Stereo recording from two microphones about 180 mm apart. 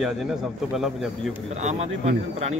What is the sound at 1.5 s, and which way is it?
Speech, 40° right (ahead or behind).